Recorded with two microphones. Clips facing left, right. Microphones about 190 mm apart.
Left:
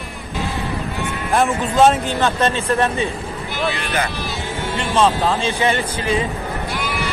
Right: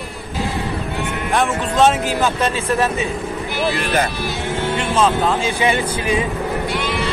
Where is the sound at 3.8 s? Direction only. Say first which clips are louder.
Right 3 dB; 55° right (ahead or behind).